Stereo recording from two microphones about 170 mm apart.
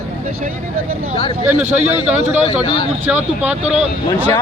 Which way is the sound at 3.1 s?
10° right (ahead or behind).